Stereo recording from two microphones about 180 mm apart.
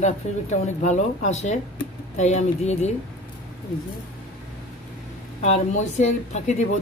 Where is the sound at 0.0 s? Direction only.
40° left (ahead or behind).